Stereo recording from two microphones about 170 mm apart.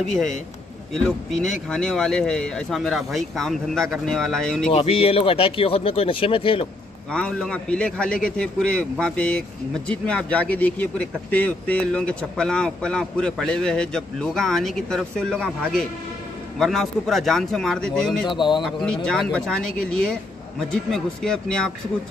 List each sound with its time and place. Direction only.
0.9 s speech: centre (ahead or behind)
4.7 s speech: 35° left (ahead or behind)
7.1 s speech: 5° left (ahead or behind)
18.3 s a man's voice: 25° left (ahead or behind)
18.6 s speech: centre (ahead or behind)